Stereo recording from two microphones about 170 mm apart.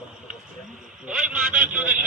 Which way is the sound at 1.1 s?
10° right (ahead or behind).